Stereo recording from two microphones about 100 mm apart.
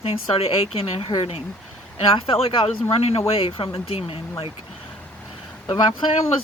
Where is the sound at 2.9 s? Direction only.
90° left.